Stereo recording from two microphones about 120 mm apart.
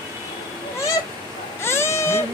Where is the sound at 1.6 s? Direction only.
20° left (ahead or behind).